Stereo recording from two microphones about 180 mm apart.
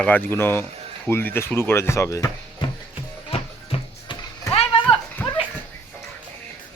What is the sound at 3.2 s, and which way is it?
Music, 30° left (ahead or behind).